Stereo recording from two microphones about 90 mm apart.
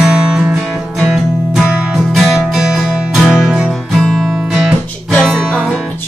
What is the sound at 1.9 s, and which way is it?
Music, centre (ahead or behind).